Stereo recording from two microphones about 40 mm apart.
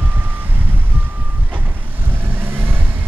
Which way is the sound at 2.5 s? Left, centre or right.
Right.